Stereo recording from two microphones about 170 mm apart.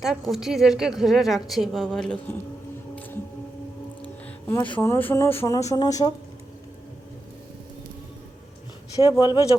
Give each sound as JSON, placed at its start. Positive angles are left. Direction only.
{"t": 0.0, "sound": "a woman's voice", "side_deg": 0}
{"t": 4.0, "sound": "music", "side_deg": 10}
{"t": 4.7, "sound": "speech", "side_deg": 20}
{"t": 9.0, "sound": "speech", "side_deg": 25}